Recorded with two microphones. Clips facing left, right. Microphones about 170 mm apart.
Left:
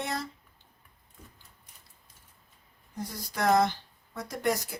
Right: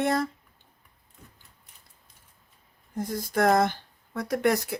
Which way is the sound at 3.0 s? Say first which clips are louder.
Right 7 dB; 50° right (ahead or behind).